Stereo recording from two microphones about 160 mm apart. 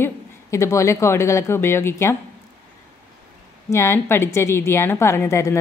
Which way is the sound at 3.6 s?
15° left (ahead or behind).